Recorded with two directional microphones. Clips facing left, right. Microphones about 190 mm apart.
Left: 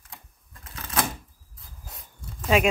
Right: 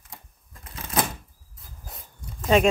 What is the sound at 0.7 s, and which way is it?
Typewriter, 25° right (ahead or behind).